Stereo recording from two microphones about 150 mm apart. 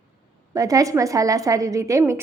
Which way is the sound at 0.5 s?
20° right (ahead or behind).